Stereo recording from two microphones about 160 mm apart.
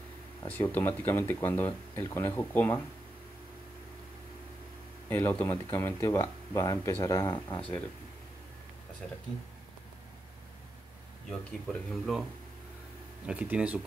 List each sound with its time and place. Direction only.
0.5 s speech: 10° left (ahead or behind)
5.1 s speech: 15° left (ahead or behind)
11.2 s speech: centre (ahead or behind)
13.3 s speech: 5° right (ahead or behind)